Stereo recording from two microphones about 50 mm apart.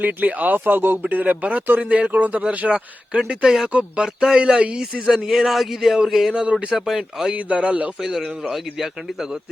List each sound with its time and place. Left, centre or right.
0.0 s speech: right
1.1 s a man's voice: right; by 6.3 s centre
6.3 s speech: right
6.7 s a man's voice: centre
7.3 s speech: right
8.1 s a man's voice: centre